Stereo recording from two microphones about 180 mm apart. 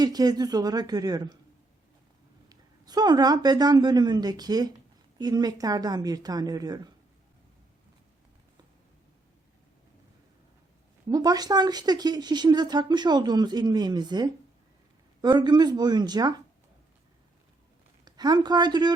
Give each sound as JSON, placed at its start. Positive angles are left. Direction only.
{"t": 0.0, "sound": "speech", "side_deg": -20}
{"t": 2.5, "sound": "speech", "side_deg": -20}
{"t": 11.1, "sound": "speech", "side_deg": -20}
{"t": 18.0, "sound": "speech", "side_deg": -25}